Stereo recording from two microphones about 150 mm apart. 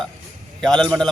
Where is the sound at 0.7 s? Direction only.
30° right (ahead or behind).